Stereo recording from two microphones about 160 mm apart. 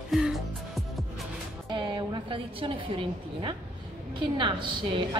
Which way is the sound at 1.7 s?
30° right (ahead or behind).